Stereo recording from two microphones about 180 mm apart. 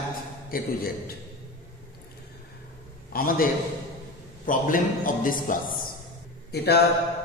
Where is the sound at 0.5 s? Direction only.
55° left (ahead or behind).